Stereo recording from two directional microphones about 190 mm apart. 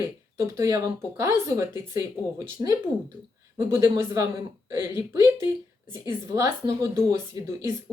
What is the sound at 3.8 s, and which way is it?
Speech, 15° right (ahead or behind).